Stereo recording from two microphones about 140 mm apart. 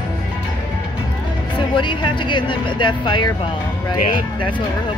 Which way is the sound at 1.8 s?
35° left (ahead or behind).